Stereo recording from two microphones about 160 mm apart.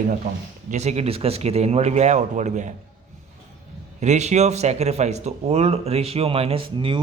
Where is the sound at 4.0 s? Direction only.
45° right (ahead or behind).